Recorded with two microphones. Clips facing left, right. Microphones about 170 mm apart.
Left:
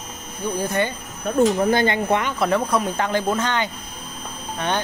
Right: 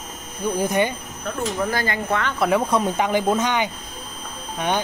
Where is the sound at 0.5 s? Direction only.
15° right (ahead or behind).